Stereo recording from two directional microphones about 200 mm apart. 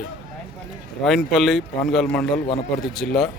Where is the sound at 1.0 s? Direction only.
Centre (ahead or behind).